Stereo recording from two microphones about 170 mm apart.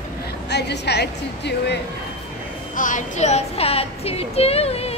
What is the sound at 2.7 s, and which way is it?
Child singing, 50° left (ahead or behind).